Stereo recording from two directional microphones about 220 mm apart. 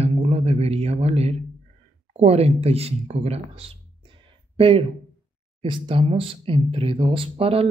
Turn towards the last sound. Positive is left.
turn(degrees=-25)  # may be behind; listen again after turning